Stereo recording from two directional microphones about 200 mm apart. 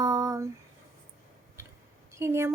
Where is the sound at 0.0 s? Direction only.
15° right (ahead or behind).